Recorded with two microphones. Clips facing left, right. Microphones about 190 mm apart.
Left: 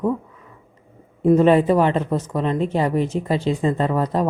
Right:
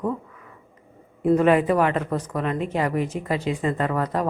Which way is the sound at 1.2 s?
25° left (ahead or behind).